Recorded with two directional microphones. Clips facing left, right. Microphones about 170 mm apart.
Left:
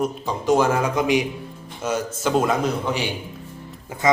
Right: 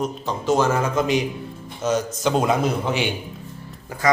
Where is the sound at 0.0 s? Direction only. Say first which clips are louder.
Left 1 dB; 10° left (ahead or behind).